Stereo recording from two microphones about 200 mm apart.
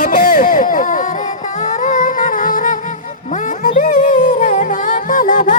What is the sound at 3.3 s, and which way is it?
Music, 40° left (ahead or behind).